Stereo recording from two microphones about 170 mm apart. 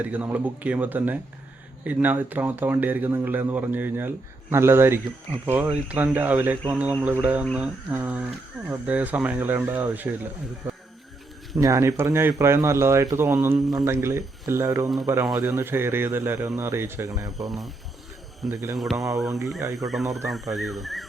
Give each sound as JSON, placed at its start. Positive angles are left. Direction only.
{"t": 0.0, "sound": "speech", "side_deg": -10}
{"t": 10.6, "sound": "a sound", "side_deg": -10}
{"t": 11.5, "sound": "speech", "side_deg": -20}
{"t": 17.3, "sound": "speech", "side_deg": 0}
{"t": 18.8, "sound": "speech", "side_deg": 0}
{"t": 19.3, "sound": "speech", "side_deg": -15}
{"t": 19.9, "sound": "speech", "side_deg": 0}